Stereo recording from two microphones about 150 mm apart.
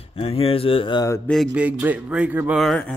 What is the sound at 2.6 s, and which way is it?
Speech, 5° left (ahead or behind).